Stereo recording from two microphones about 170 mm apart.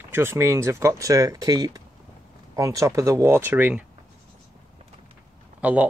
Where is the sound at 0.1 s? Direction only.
15° right (ahead or behind).